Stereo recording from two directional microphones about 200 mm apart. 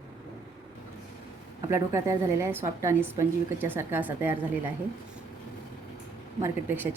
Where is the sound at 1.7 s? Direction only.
15° right (ahead or behind).